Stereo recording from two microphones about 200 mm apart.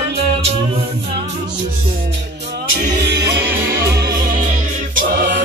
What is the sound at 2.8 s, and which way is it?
Music, 55° right (ahead or behind).